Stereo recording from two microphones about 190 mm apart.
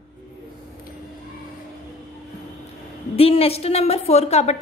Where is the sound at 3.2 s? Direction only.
30° left (ahead or behind).